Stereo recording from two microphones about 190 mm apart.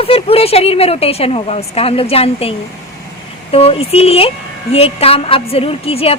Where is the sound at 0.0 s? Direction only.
30° left (ahead or behind).